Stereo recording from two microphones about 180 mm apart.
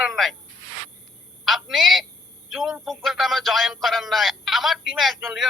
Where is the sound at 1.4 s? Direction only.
Centre (ahead or behind).